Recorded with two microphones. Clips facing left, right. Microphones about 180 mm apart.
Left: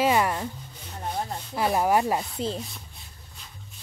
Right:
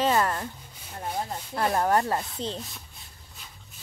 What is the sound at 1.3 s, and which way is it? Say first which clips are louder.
Rub: left 1 dB; 5° left (ahead or behind).